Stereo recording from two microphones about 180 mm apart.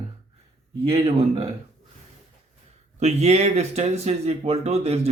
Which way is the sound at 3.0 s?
35° right (ahead or behind).